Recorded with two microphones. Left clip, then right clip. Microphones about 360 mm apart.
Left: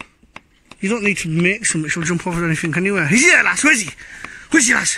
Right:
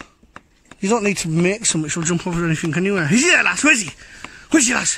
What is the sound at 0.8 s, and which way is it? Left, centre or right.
Speech, centre.